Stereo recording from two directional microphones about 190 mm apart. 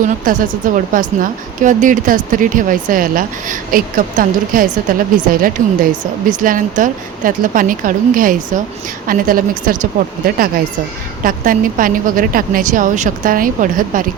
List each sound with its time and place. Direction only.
0.3 s speech: 45° right (ahead or behind)